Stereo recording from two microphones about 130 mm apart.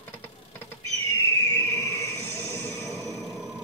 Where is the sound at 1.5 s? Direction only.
20° left (ahead or behind).